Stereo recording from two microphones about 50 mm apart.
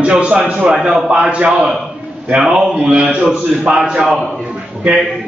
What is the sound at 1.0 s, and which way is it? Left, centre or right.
A man's voice, centre.